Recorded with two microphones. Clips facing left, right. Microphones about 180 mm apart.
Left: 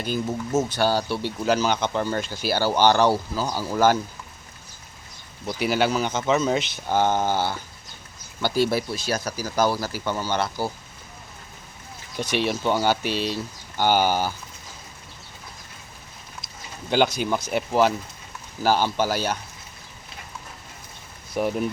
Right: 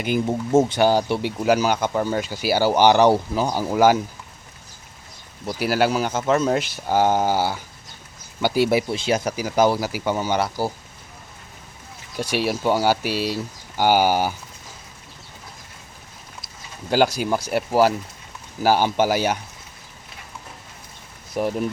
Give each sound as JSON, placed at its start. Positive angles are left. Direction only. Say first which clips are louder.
{"t": 0.3, "sound": "speech", "louder": "right 7 dB", "side_deg": -30}
{"t": 0.7, "sound": "speech", "louder": "right 4 dB", "side_deg": -20}
{"t": 5.5, "sound": "speech", "louder": "right 2 dB", "side_deg": -5}
{"t": 12.1, "sound": "speech", "louder": "right 1 dB", "side_deg": -5}
{"t": 16.9, "sound": "speech", "louder": "right 2 dB", "side_deg": -5}
{"t": 21.3, "sound": "speech", "louder": "right 1 dB", "side_deg": 0}